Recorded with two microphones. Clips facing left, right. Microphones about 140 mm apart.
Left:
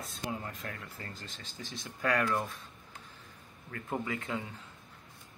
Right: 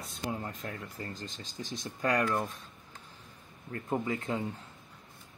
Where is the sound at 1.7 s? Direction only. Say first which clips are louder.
Right 1 dB; 15° right (ahead or behind).